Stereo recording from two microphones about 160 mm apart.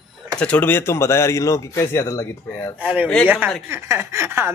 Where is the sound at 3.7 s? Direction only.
15° right (ahead or behind).